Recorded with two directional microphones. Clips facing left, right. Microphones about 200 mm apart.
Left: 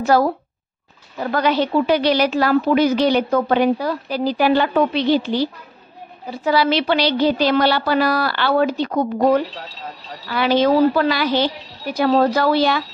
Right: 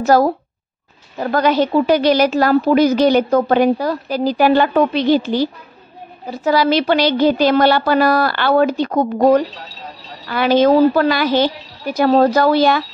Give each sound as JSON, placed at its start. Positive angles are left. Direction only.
{"t": 0.0, "sound": "a woman's voice", "side_deg": -40}